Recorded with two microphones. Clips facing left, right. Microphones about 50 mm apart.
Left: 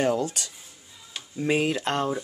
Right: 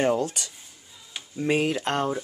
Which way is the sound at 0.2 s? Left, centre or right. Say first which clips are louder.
Right 1 dB; centre.